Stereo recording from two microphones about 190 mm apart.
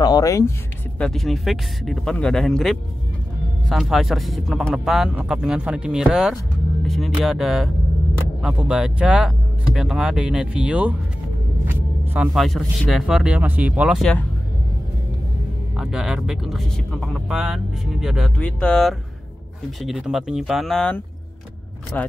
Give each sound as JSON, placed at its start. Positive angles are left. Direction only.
{"t": 0.0, "sound": "a sound", "side_deg": 20}
{"t": 0.9, "sound": "speech", "side_deg": 5}
{"t": 11.6, "sound": "music", "side_deg": -10}
{"t": 12.4, "sound": "speech", "side_deg": 0}
{"t": 15.7, "sound": "speech", "side_deg": -5}